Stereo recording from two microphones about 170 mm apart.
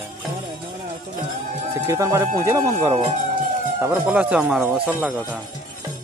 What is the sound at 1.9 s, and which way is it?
Speech, 20° right (ahead or behind).